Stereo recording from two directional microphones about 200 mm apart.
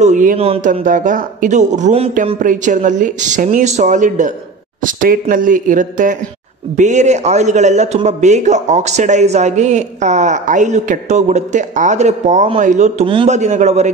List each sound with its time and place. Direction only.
0.0 s a man's voice: 40° right (ahead or behind)